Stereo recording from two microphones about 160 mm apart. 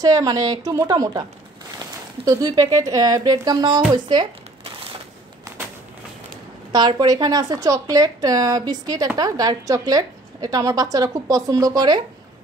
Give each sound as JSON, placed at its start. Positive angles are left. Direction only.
{"t": 0.0, "sound": "a woman's voice", "side_deg": -25}
{"t": 2.2, "sound": "a woman's voice", "side_deg": -25}
{"t": 6.7, "sound": "a woman's voice", "side_deg": -25}